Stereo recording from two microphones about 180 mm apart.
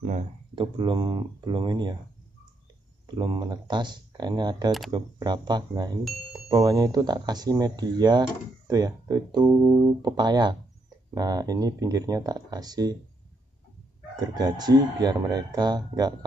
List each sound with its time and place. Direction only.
0.0 s speech: 45° right (ahead or behind)
0.6 s speech: 25° right (ahead or behind)
3.2 s speech: 20° right (ahead or behind)
14.2 s speech: 20° right (ahead or behind)